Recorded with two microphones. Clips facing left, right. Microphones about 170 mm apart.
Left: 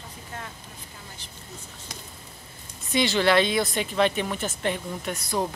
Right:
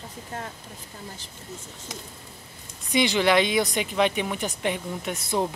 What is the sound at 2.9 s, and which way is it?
Speech, 15° right (ahead or behind).